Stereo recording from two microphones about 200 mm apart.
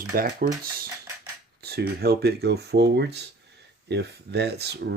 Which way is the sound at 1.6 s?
50° right (ahead or behind).